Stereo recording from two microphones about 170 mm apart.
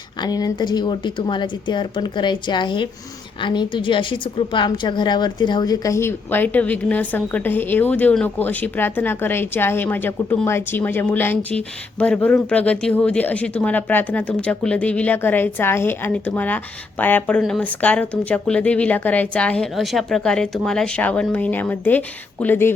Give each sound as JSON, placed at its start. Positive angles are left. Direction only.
{"t": 0.2, "sound": "a woman's voice", "side_deg": 20}